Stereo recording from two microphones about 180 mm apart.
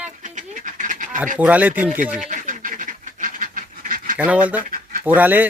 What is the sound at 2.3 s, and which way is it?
Duck, 45° right (ahead or behind).